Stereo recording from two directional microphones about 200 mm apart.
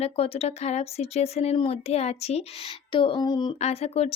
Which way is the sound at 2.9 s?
25° left (ahead or behind).